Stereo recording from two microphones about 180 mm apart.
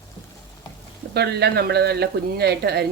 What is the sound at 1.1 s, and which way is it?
A woman's voice, 65° right (ahead or behind).